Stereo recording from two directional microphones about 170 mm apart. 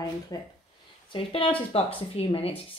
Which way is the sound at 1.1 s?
30° left (ahead or behind).